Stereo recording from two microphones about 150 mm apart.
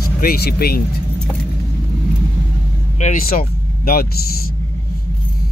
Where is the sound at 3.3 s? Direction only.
80° left.